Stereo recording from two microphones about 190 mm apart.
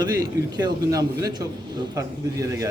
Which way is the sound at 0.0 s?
20° right (ahead or behind).